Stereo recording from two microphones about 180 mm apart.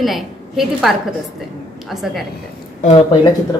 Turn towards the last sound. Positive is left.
turn(degrees=30)  # may be behind; listen again after turning